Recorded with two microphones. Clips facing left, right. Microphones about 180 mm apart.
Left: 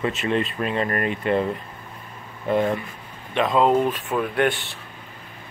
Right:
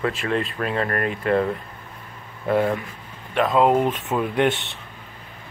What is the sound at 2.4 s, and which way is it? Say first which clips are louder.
Speech: right 1 dB; 5° right (ahead or behind).